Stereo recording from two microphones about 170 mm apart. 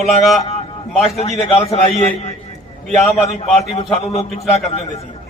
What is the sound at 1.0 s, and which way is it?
A man's voice, 40° left (ahead or behind).